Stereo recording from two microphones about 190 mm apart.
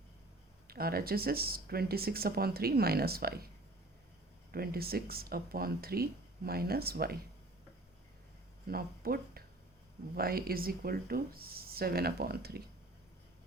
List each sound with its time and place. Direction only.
0.7 s speech: 50° right (ahead or behind)
4.5 s speech: 55° right (ahead or behind)
8.6 s speech: 55° right (ahead or behind)